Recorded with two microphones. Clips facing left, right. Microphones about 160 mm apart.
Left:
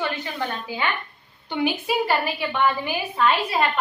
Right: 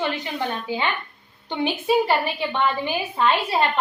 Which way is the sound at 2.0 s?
25° right (ahead or behind).